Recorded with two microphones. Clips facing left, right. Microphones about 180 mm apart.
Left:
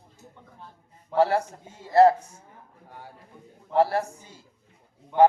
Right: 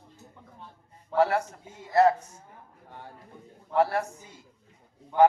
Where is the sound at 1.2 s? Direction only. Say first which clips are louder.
Left 2 dB; 30° left (ahead or behind).